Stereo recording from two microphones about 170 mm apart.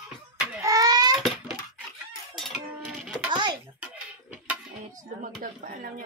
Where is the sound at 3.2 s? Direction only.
25° right (ahead or behind).